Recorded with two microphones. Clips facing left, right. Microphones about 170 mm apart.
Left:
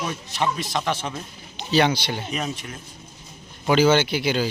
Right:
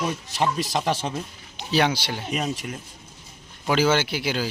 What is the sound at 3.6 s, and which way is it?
Speech, 5° right (ahead or behind).